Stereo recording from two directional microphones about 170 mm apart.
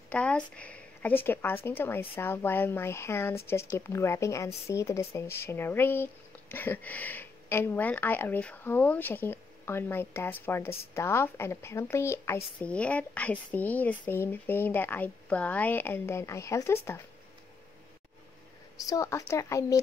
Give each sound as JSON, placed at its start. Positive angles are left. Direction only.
{"t": 0.1, "sound": "speech", "side_deg": 5}
{"t": 18.9, "sound": "speech", "side_deg": 20}